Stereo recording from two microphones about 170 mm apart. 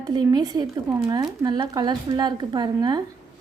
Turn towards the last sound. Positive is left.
turn(degrees=-25)  # may be behind; listen again after turning